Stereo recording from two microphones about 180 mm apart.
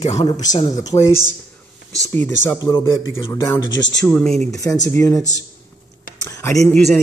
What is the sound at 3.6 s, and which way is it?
Speech, 90° left.